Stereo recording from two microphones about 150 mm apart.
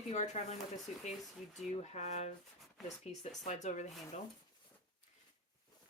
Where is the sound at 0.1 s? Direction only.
50° left (ahead or behind).